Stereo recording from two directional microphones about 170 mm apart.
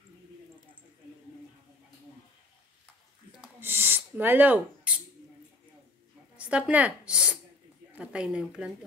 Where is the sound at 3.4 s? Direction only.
10° right (ahead or behind).